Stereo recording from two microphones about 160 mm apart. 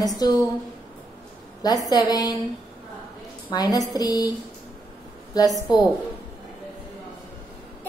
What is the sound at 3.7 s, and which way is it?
Speech, 20° left (ahead or behind).